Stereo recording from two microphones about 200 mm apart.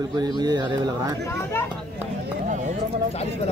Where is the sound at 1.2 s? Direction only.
10° left (ahead or behind).